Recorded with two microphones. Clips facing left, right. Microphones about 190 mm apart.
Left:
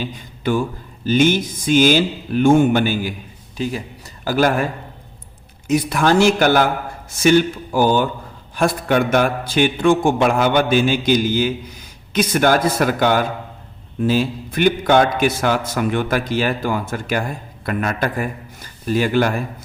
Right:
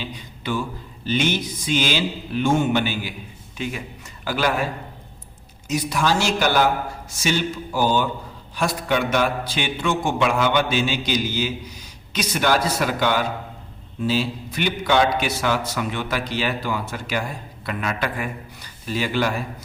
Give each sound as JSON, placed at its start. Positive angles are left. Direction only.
{"t": 0.0, "sound": "a man's voice", "side_deg": 50}
{"t": 1.0, "sound": "a sound", "side_deg": 45}
{"t": 3.6, "sound": "a man's voice", "side_deg": 35}
{"t": 5.6, "sound": "a man's voice", "side_deg": 55}
{"t": 8.5, "sound": "a sound", "side_deg": 50}
{"t": 17.7, "sound": "a man's voice", "side_deg": 45}